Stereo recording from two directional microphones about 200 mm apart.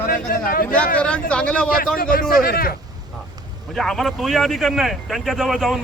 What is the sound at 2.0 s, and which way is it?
Speech, 45° left (ahead or behind).